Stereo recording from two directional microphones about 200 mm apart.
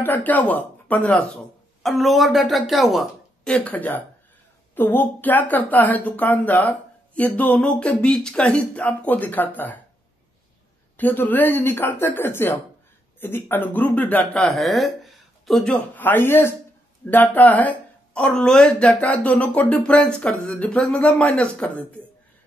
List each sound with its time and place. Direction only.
0.0 s speech: 10° left (ahead or behind)
11.0 s speech: 10° left (ahead or behind)